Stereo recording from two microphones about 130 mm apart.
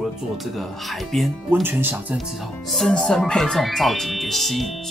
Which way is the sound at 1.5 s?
15° right (ahead or behind).